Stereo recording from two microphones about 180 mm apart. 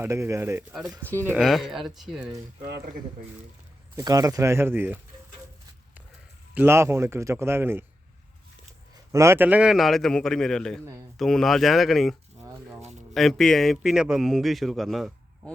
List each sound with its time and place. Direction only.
0.0 s a man's voice: 15° right (ahead or behind)
1.3 s a man's voice: centre (ahead or behind)
2.6 s speech: 60° right (ahead or behind)
3.9 s a man's voice: 20° right (ahead or behind)
6.5 s a man's voice: 10° right (ahead or behind)
9.1 s a man's voice: 15° right (ahead or behind); by 12.1 s centre (ahead or behind)
13.1 s a man's voice: centre (ahead or behind)